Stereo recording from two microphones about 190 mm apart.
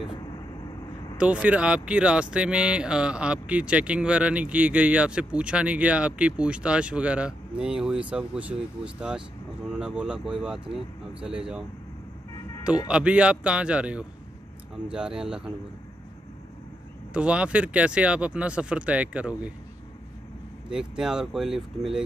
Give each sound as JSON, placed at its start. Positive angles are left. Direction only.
{"t": 0.0, "sound": "vehicle", "side_deg": 25}
{"t": 1.1, "sound": "speech", "side_deg": -5}
{"t": 12.8, "sound": "speech", "side_deg": -5}
{"t": 17.1, "sound": "speech", "side_deg": -5}
{"t": 20.7, "sound": "speech", "side_deg": -5}